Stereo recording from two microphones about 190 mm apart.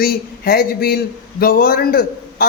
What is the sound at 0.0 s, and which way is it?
A man's voice, 50° left (ahead or behind).